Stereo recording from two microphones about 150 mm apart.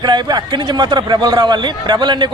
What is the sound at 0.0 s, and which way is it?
Speech, 30° right (ahead or behind).